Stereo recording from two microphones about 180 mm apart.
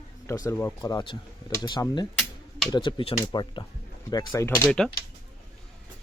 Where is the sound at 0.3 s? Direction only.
20° left (ahead or behind).